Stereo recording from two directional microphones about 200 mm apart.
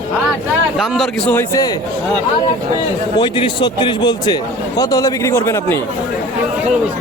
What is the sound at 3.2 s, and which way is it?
A man's voice, 25° left (ahead or behind).